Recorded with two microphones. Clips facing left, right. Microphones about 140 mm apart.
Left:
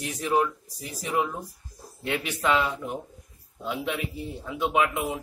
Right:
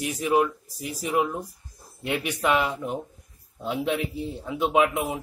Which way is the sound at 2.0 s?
20° right (ahead or behind).